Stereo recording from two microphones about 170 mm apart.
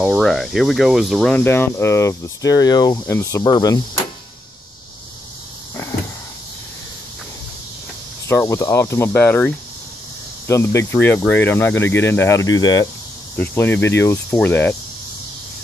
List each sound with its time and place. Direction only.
0.0 s speech: centre (ahead or behind)
1.3 s speech: 10° left (ahead or behind)
3.4 s cricket: 25° left (ahead or behind)
8.3 s speech: 15° left (ahead or behind)
13.4 s speech: 10° left (ahead or behind)